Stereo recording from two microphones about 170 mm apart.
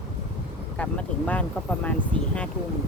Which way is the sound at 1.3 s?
10° left (ahead or behind).